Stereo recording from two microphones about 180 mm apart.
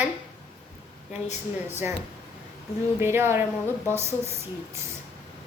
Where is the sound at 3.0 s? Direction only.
15° right (ahead or behind).